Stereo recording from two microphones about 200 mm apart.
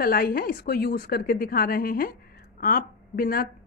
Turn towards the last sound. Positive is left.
turn(degrees=45)  # may be behind; listen again after turning